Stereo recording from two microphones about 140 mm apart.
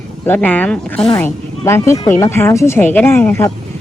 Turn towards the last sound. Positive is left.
turn(degrees=15)  # may be behind; listen again after turning